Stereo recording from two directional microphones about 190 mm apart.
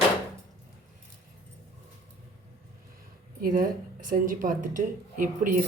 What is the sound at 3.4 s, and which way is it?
A woman's voice, 45° right (ahead or behind).